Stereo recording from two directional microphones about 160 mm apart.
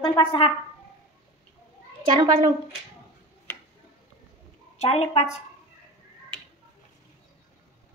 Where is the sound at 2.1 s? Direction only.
35° right (ahead or behind).